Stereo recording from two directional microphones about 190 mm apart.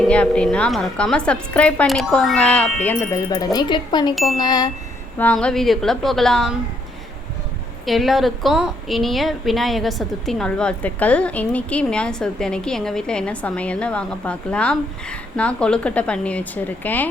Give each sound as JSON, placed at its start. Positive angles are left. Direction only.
{"t": 0.1, "sound": "a woman's voice", "side_deg": 5}
{"t": 4.1, "sound": "a woman's voice", "side_deg": 0}
{"t": 4.4, "sound": "chime", "side_deg": 20}
{"t": 5.1, "sound": "a woman's voice", "side_deg": 5}
{"t": 7.9, "sound": "a woman's voice", "side_deg": 0}